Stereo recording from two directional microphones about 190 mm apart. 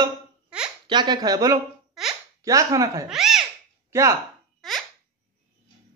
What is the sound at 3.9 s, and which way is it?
Speech, 15° right (ahead or behind).